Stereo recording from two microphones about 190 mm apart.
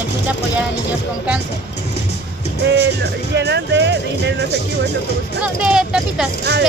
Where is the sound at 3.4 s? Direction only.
65° right (ahead or behind).